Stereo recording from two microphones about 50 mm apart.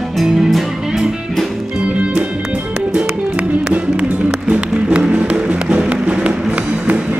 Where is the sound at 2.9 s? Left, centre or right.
Right.